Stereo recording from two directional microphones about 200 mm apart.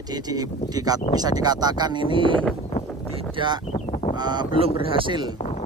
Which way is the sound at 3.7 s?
30° left (ahead or behind).